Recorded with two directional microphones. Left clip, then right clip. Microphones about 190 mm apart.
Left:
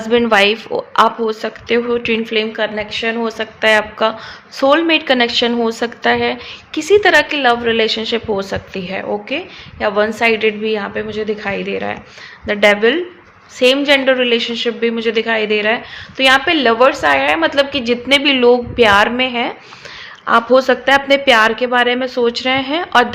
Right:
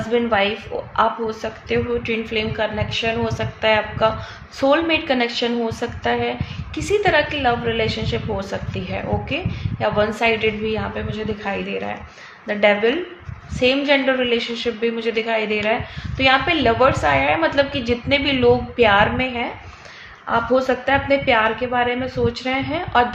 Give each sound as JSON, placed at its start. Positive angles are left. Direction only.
{"t": 0.1, "sound": "a woman's voice", "side_deg": 55}